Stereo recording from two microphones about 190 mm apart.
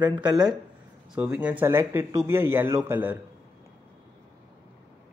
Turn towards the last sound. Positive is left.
turn(degrees=-10)  # may be behind; listen again after turning